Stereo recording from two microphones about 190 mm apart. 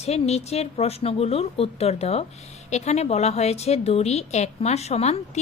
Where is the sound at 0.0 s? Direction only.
35° left (ahead or behind).